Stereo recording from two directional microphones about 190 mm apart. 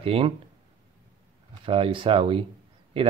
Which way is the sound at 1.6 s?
30° right (ahead or behind).